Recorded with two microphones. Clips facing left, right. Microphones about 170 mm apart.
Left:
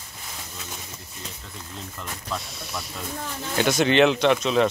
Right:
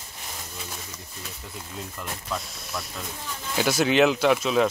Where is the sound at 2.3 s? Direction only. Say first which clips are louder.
Left 1 dB; centre (ahead or behind).